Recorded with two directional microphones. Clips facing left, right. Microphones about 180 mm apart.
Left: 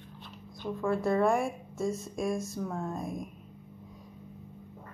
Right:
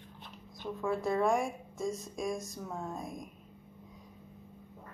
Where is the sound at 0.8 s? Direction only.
Centre (ahead or behind).